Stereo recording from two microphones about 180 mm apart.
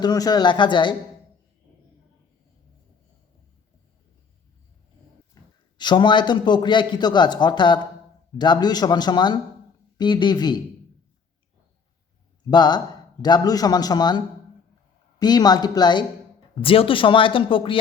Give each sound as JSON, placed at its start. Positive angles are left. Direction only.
{"t": 0.0, "sound": "speech", "side_deg": 20}
{"t": 5.3, "sound": "a man's voice", "side_deg": 25}
{"t": 12.5, "sound": "speech", "side_deg": 25}
{"t": 15.2, "sound": "speech", "side_deg": 20}